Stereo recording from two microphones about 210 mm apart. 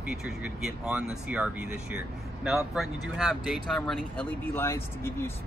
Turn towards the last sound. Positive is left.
turn(degrees=10)  # may be behind; listen again after turning